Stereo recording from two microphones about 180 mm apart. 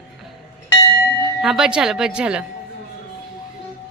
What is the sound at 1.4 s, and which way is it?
Speech, 5° right (ahead or behind).